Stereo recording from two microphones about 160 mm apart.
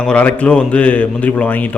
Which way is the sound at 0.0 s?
5° left (ahead or behind).